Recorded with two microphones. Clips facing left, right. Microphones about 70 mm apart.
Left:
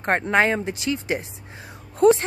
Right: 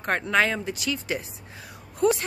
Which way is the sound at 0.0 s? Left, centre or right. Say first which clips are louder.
Left 3 dB; left.